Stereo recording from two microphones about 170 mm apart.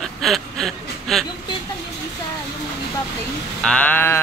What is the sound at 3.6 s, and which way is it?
Speech, 5° left (ahead or behind).